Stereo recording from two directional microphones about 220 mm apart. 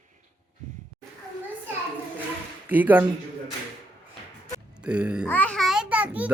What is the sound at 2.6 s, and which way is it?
Speech, 10° right (ahead or behind).